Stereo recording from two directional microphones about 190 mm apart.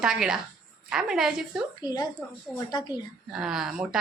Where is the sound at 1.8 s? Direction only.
20° left (ahead or behind).